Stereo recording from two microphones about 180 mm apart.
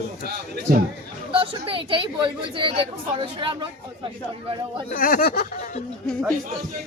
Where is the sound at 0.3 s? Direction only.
60° right (ahead or behind).